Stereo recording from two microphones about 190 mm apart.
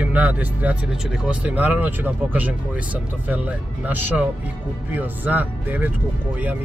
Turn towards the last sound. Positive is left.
turn(degrees=-10)  # may be behind; listen again after turning